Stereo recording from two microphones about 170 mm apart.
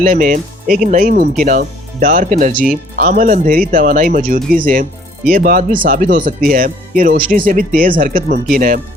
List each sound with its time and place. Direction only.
0.0 s speech: 50° right (ahead or behind)